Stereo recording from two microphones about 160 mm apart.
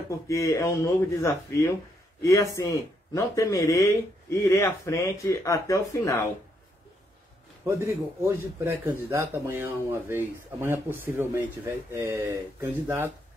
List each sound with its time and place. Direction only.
0.3 s speech: 20° left (ahead or behind)
7.6 s a man's voice: 15° right (ahead or behind)